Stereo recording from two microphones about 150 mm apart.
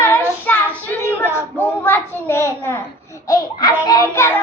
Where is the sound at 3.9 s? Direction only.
20° left (ahead or behind).